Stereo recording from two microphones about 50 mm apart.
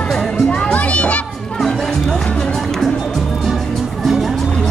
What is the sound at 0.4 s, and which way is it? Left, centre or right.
Music, centre.